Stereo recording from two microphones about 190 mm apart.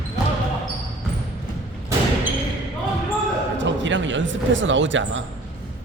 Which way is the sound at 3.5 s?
75° right (ahead or behind).